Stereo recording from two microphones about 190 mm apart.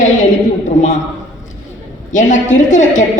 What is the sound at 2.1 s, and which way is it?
Speech, 40° left (ahead or behind).